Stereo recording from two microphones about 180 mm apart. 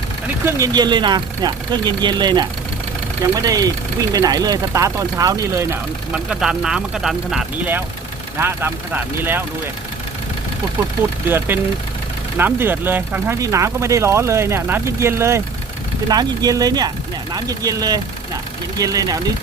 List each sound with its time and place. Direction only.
0.4 s speech: 20° right (ahead or behind)
6.1 s speech: 5° right (ahead or behind)
11.3 s speech: 10° right (ahead or behind)